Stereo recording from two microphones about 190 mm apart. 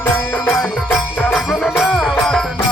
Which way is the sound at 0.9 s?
Centre (ahead or behind).